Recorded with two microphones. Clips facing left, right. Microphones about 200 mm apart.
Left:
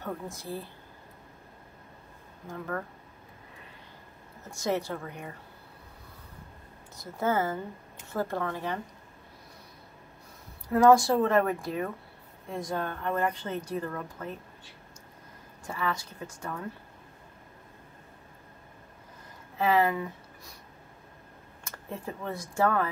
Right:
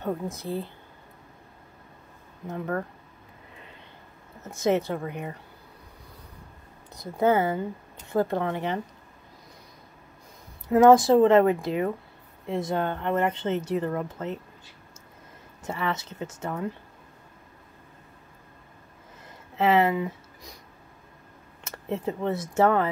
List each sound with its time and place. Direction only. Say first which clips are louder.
0.0 s speech: right 6 dB; 20° right (ahead or behind)
4.6 s speech: right 6 dB; 20° right (ahead or behind)
7.2 s speech: right 6 dB; 20° right (ahead or behind)
10.7 s speech: right 4 dB; 20° right (ahead or behind)
15.6 s speech: right 3 dB; 25° right (ahead or behind)
19.5 s speech: right 4 dB; 25° right (ahead or behind)
21.6 s speech: right 8 dB; 25° right (ahead or behind)